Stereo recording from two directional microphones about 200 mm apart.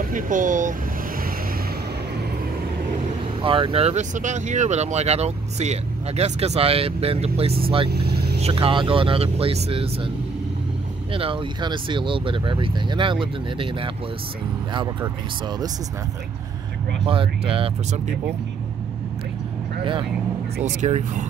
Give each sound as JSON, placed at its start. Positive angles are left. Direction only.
{"t": 0.0, "sound": "speech", "side_deg": -40}
{"t": 3.4, "sound": "speech", "side_deg": -25}
{"t": 7.9, "sound": "vehicle", "side_deg": -55}
{"t": 8.4, "sound": "speech", "side_deg": -30}
{"t": 11.1, "sound": "speech", "side_deg": -25}
{"t": 17.0, "sound": "speech", "side_deg": -25}
{"t": 19.8, "sound": "speech", "side_deg": -25}
{"t": 20.6, "sound": "speech", "side_deg": -35}